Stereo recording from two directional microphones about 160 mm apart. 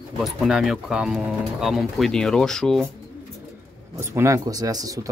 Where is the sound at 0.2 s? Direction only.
Centre (ahead or behind).